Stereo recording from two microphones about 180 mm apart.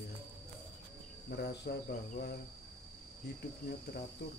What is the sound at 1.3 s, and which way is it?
Speech, 65° left (ahead or behind).